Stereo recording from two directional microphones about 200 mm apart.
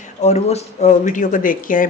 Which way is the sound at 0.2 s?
30° left (ahead or behind).